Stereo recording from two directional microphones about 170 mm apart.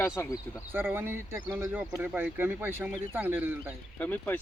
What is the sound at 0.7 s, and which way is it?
Speech, 10° right (ahead or behind).